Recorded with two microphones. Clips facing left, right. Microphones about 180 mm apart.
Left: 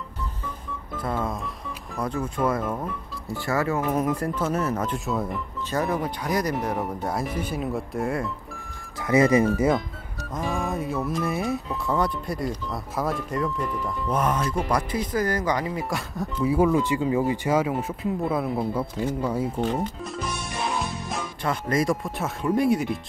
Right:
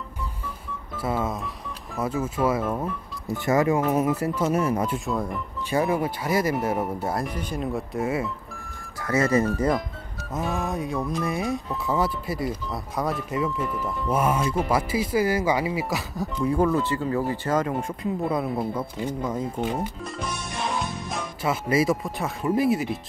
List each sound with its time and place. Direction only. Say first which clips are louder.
0.9 s speech: right 1 dB; 5° right (ahead or behind)
3.3 s speech: right 4 dB; 20° right (ahead or behind)
4.9 s speech: even; centre (ahead or behind)
5.7 s speech: right 3 dB; 10° right (ahead or behind)
9.0 s speech: left 3 dB; 15° left (ahead or behind)
9.5 s speech: left 2 dB; 5° left (ahead or behind)
19.5 s speech: left 2 dB; 10° right (ahead or behind)